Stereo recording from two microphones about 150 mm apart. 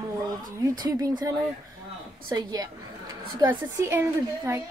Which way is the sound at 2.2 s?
25° right (ahead or behind).